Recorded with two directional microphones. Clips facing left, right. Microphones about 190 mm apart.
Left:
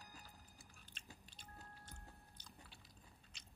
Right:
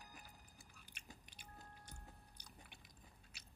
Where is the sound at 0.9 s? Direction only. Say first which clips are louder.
Right 1 dB; 10° right (ahead or behind).